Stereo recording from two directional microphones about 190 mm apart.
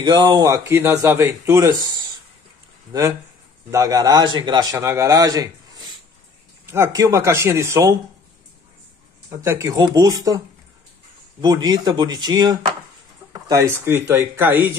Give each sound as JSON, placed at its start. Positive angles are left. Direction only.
{"t": 0.0, "sound": "a man's voice", "side_deg": -25}
{"t": 2.9, "sound": "a man's voice", "side_deg": -15}
{"t": 9.3, "sound": "a man's voice", "side_deg": -15}
{"t": 11.4, "sound": "a man's voice", "side_deg": -20}